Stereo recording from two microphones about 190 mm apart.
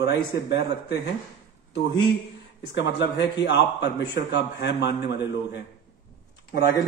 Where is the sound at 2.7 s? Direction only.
70° left (ahead or behind).